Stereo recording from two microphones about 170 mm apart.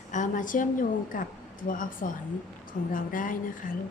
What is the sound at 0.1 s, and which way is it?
Speech, 50° left (ahead or behind).